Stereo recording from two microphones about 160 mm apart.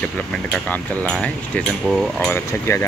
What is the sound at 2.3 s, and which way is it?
Speech, 15° left (ahead or behind).